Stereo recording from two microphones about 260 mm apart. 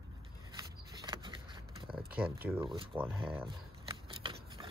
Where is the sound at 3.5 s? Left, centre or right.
Centre.